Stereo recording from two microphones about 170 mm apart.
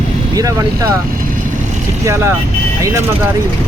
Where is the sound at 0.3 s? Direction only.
20° right (ahead or behind).